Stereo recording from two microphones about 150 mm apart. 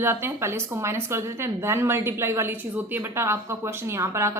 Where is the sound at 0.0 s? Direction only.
15° right (ahead or behind).